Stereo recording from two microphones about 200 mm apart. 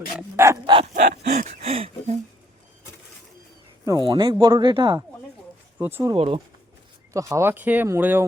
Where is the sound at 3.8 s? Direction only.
20° right (ahead or behind).